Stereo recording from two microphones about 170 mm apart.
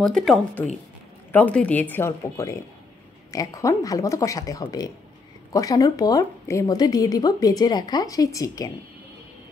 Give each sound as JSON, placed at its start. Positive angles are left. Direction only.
{"t": 0.0, "sound": "speech", "side_deg": 0}